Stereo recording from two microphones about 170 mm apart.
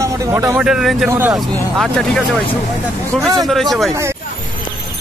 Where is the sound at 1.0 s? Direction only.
15° right (ahead or behind).